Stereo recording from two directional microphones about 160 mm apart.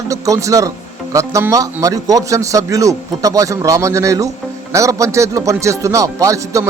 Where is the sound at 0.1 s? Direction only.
20° right (ahead or behind).